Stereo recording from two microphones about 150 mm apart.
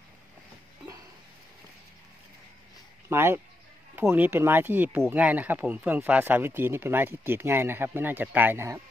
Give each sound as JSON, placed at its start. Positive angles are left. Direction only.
{"t": 3.1, "sound": "speech", "side_deg": -15}